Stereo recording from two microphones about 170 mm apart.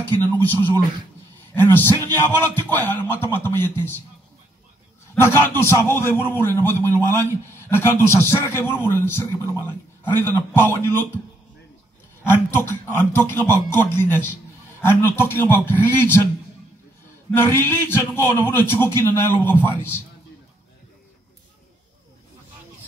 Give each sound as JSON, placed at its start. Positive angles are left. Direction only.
{"t": 1.5, "sound": "a man's voice", "side_deg": 15}
{"t": 5.1, "sound": "a man's voice", "side_deg": 15}
{"t": 12.2, "sound": "a man's voice", "side_deg": 15}
{"t": 17.3, "sound": "a man's voice", "side_deg": 15}